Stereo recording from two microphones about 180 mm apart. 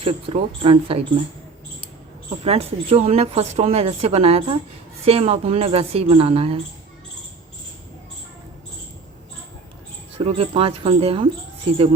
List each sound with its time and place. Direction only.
0.0 s speech: 30° right (ahead or behind)
2.4 s speech: 35° right (ahead or behind)
10.2 s speech: 35° right (ahead or behind)